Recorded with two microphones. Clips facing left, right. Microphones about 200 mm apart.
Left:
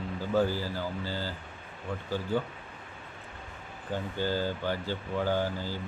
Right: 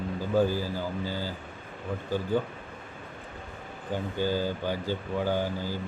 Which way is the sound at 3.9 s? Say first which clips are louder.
Right 2 dB; 15° right (ahead or behind).